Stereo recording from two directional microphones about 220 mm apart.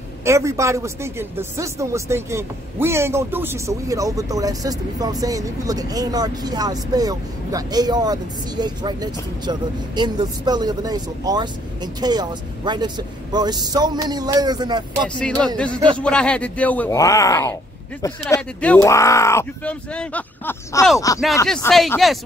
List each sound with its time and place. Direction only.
0.2 s speech: 15° right (ahead or behind)
15.1 s speech: 5° left (ahead or behind)